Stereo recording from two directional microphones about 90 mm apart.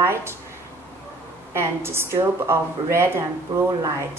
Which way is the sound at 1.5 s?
30° right (ahead or behind).